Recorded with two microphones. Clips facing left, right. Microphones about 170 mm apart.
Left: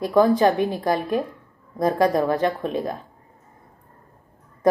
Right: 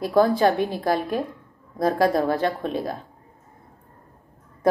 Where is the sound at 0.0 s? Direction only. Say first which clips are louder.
Left 1 dB; 5° right (ahead or behind).